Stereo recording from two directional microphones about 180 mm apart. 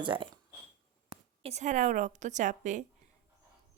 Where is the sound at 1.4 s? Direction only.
40° right (ahead or behind).